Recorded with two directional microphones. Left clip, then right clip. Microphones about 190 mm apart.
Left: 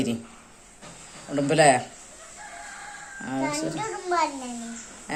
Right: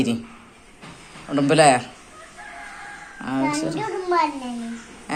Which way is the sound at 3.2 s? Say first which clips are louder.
Right 4 dB; 25° left (ahead or behind).